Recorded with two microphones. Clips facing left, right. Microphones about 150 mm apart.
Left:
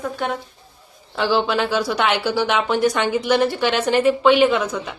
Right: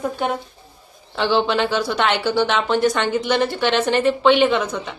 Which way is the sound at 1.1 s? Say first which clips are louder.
Right 1 dB; 5° left (ahead or behind).